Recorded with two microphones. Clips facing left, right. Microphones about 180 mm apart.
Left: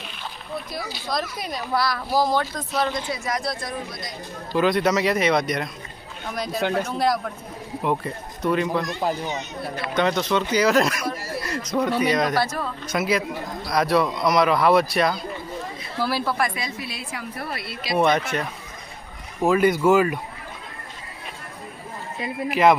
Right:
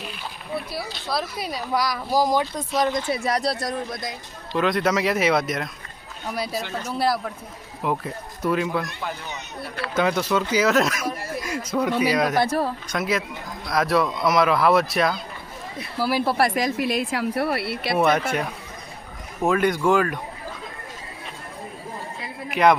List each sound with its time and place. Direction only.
0.5 s speech: 5° right (ahead or behind)
3.2 s speech: 35° right (ahead or behind)
4.5 s a man's voice: centre (ahead or behind)
9.9 s a man's voice: 5° right (ahead or behind)
11.3 s a sound: 10° right (ahead or behind)
11.9 s speech: 5° right (ahead or behind)
12.5 s speech: 35° right (ahead or behind)
12.9 s a man's voice: centre (ahead or behind)
16.0 s speech: 10° right (ahead or behind)
16.2 s speech: 30° right (ahead or behind)
16.7 s speech: 90° right; by 17.9 s 65° right (ahead or behind)
17.9 s a man's voice: 5° right (ahead or behind)
19.4 s speech: 5° left (ahead or behind)
22.4 s a man's voice: centre (ahead or behind)